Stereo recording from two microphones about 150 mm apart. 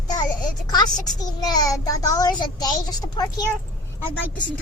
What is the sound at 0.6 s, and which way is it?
A child's voice, 30° left (ahead or behind).